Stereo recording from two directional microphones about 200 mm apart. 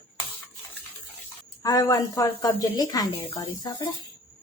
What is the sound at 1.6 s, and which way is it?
Speech, 20° left (ahead or behind).